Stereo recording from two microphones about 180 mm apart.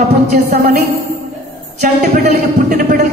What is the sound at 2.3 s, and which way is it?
Speech, 60° right (ahead or behind).